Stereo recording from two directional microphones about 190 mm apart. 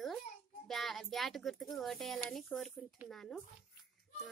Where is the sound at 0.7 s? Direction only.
Centre (ahead or behind).